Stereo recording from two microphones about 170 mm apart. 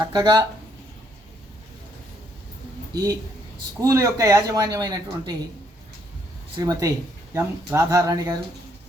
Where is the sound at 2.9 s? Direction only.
20° right (ahead or behind).